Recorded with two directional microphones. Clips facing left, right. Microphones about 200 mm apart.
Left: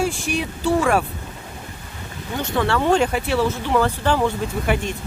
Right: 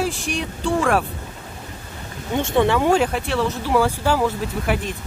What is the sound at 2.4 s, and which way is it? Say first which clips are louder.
Speech: right 4 dB; 25° right (ahead or behind).